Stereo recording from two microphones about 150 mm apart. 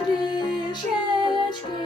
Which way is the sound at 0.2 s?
30° left (ahead or behind).